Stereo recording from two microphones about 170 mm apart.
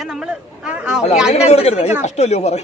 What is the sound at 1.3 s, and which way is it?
Speech, 40° left (ahead or behind).